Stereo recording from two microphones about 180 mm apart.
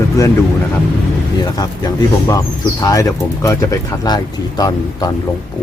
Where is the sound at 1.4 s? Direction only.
20° left (ahead or behind).